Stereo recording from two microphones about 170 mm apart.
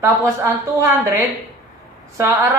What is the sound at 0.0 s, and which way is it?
A woman's voice, 15° right (ahead or behind).